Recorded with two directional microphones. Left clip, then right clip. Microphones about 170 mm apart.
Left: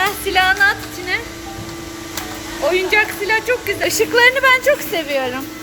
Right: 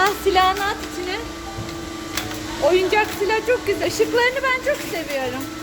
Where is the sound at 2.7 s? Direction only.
5° right (ahead or behind).